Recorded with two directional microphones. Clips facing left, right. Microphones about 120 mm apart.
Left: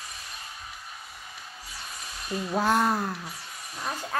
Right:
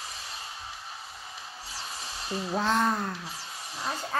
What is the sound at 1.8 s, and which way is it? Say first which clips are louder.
Music: right 2 dB; 30° right (ahead or behind).